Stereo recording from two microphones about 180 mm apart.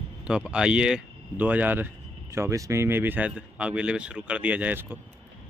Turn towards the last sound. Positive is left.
turn(degrees=-10)  # may be behind; listen again after turning